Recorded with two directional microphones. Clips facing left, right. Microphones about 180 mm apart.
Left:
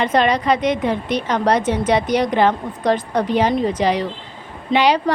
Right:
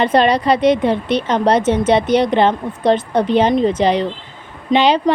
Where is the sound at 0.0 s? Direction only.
30° right (ahead or behind).